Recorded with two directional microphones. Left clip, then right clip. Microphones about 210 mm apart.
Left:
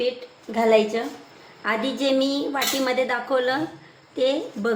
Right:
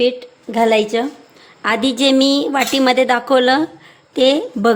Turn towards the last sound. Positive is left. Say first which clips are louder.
# right 9 dB
turn(degrees=-50)  # may be behind; listen again after turning